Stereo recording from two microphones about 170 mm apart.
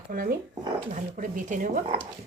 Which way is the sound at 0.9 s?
50° right (ahead or behind).